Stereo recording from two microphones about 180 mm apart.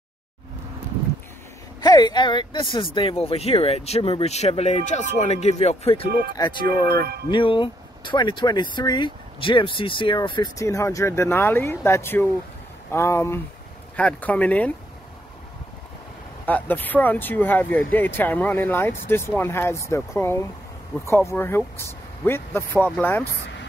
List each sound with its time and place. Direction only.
1.8 s speech: 25° left (ahead or behind)
6.9 s music: 60° right (ahead or behind)
7.2 s speech: 25° left (ahead or behind); by 14.7 s 10° left (ahead or behind)
16.4 s speech: 10° left (ahead or behind)